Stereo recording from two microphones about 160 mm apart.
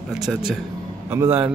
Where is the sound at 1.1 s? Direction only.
15° right (ahead or behind).